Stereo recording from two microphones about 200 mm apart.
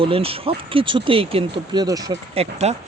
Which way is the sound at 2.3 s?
30° right (ahead or behind).